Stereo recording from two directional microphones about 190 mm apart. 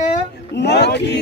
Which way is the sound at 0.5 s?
60° left (ahead or behind).